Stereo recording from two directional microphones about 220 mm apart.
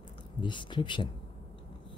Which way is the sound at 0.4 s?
20° left (ahead or behind).